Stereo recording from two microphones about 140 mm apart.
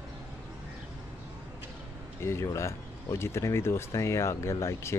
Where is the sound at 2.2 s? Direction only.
20° left (ahead or behind).